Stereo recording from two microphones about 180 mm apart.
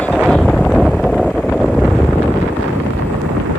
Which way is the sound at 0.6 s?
5° left (ahead or behind).